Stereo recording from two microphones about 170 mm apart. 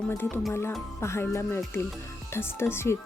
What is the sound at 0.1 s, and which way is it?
Speech, 10° left (ahead or behind).